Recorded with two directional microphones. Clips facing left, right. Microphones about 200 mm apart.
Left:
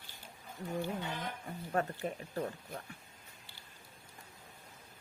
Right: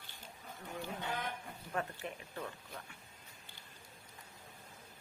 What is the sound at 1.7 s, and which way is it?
Speech, 40° left (ahead or behind).